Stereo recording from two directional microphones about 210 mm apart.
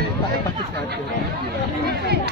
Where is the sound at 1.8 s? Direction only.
50° right (ahead or behind).